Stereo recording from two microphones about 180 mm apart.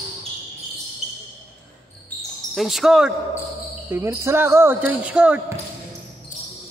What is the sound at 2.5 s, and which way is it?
A woman's voice, centre (ahead or behind).